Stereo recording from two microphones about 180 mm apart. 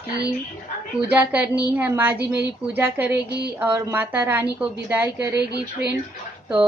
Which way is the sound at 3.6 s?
10° right (ahead or behind).